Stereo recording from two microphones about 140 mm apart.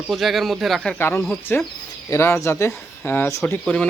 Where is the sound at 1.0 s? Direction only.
15° left (ahead or behind).